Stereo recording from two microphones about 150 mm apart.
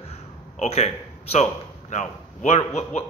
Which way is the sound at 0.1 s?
45° left (ahead or behind).